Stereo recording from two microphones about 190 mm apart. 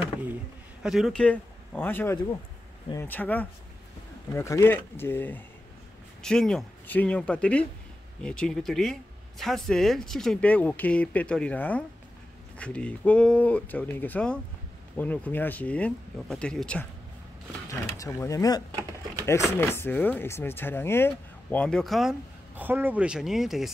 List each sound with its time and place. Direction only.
0.8 s speech: centre (ahead or behind)
17.6 s speech: 15° left (ahead or behind)
19.6 s speech: 10° left (ahead or behind)
22.6 s speech: 10° right (ahead or behind)